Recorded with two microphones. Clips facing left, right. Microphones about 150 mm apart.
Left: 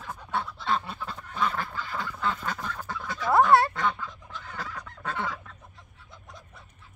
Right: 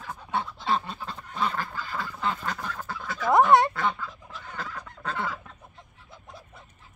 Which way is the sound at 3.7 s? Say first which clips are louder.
Even; 5° right (ahead or behind).